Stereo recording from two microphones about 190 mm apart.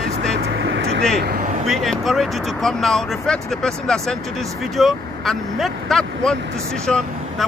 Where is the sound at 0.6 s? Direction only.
65° right (ahead or behind).